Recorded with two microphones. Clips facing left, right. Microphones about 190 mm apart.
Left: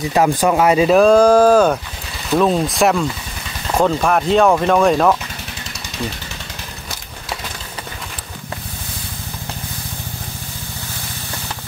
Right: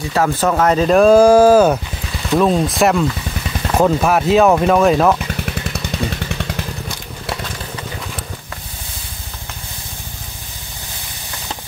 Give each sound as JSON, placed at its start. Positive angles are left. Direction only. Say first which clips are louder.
{"t": 0.1, "sound": "speech", "louder": "left 1 dB", "side_deg": 15}